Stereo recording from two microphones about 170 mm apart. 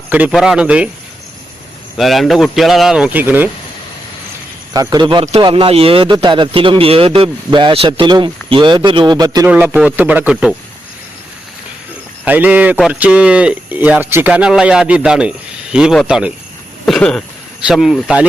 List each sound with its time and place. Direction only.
0.1 s speech: 5° right (ahead or behind)
2.0 s speech: centre (ahead or behind)
4.7 s a man's voice: 20° right (ahead or behind)
9.5 s speech: 10° right (ahead or behind)
12.2 s speech: 10° right (ahead or behind)
16.8 s a sound: 5° left (ahead or behind)
17.7 s speech: centre (ahead or behind)